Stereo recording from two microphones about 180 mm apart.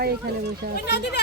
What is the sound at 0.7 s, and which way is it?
Speech, 65° left (ahead or behind).